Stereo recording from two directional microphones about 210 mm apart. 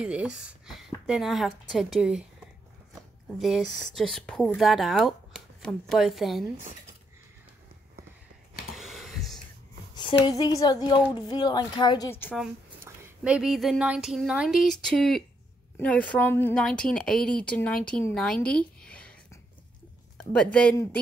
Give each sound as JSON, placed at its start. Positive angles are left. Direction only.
{"t": 0.0, "sound": "a woman's voice", "side_deg": -5}
{"t": 3.3, "sound": "a woman's voice", "side_deg": 0}
{"t": 8.7, "sound": "a sound", "side_deg": 0}
{"t": 10.2, "sound": "a woman's voice", "side_deg": 15}
{"t": 12.8, "sound": "a woman's voice", "side_deg": -10}
{"t": 20.2, "sound": "a woman's voice", "side_deg": 5}